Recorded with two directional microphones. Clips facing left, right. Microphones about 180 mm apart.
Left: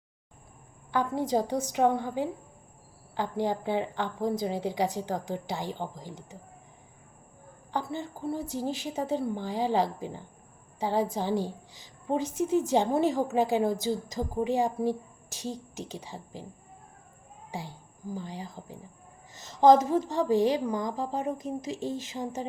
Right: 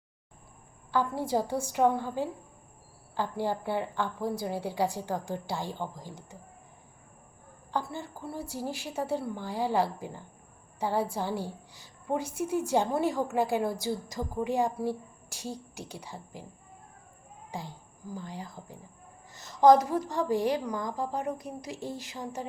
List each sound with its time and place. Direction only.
0.9 s a woman's voice: 15° left (ahead or behind)
7.7 s a woman's voice: 20° left (ahead or behind)
11.4 s a sound: 15° left (ahead or behind)
12.6 s a woman's voice: 20° left (ahead or behind)
15.3 s speech: 15° right (ahead or behind)
16.0 s a woman's voice: 15° left (ahead or behind)
18.1 s a woman's voice: 15° left (ahead or behind)